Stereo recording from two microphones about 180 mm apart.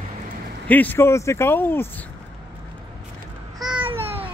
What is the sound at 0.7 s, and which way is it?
Speech, 10° left (ahead or behind).